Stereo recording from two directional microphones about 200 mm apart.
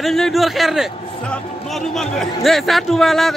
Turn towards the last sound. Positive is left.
turn(degrees=0)  # may be behind; listen again after turning